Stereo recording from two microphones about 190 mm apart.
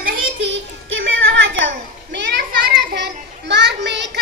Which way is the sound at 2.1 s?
65° right (ahead or behind).